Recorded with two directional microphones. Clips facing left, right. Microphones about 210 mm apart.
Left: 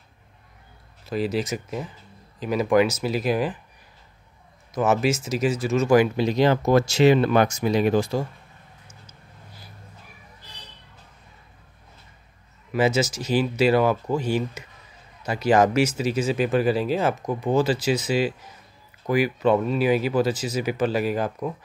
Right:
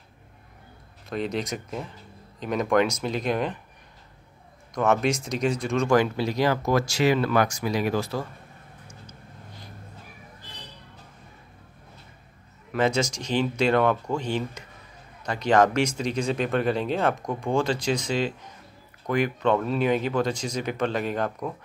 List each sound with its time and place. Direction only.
1.0 s speech: 5° left (ahead or behind)
4.7 s speech: 5° left (ahead or behind)
6.1 s speech: 20° left (ahead or behind)
12.7 s speech: 5° left (ahead or behind)